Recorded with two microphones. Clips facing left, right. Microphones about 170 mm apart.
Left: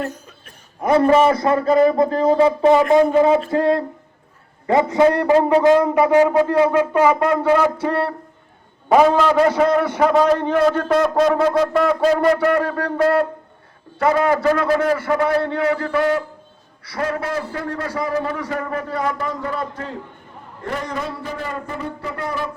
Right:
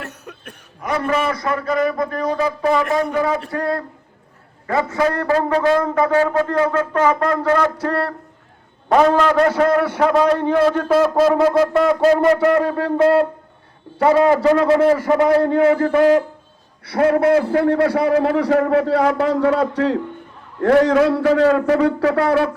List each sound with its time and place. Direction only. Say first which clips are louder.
0.0 s speech: left 6 dB; 70° right (ahead or behind)
0.8 s a man's voice: left 7 dB; 30° left (ahead or behind); by 8.1 s 5° left (ahead or behind)
8.9 s a sound: even; 5° left (ahead or behind)
9.6 s a man's voice: right 1 dB; 10° right (ahead or behind)
10.0 s a sound: left 1 dB; centre (ahead or behind)
12.8 s a man's voice: right 4 dB; 25° right (ahead or behind)
15.4 s a man's voice: right 5 dB; 45° right (ahead or behind)
16.8 s a man's voice: right 9 dB; 55° right (ahead or behind); by 22.4 s 80° right